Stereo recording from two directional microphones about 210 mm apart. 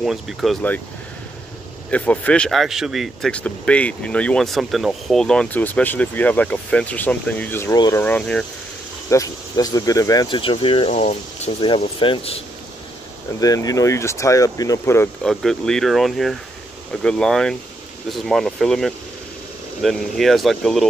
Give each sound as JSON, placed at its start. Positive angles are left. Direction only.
{"t": 0.0, "sound": "speech", "side_deg": 0}
{"t": 1.9, "sound": "speech", "side_deg": 5}
{"t": 9.1, "sound": "speech", "side_deg": 15}
{"t": 13.4, "sound": "speech", "side_deg": 15}
{"t": 15.2, "sound": "speech", "side_deg": 0}